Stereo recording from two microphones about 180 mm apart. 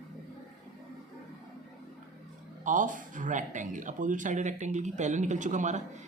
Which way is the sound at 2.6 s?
45° right (ahead or behind).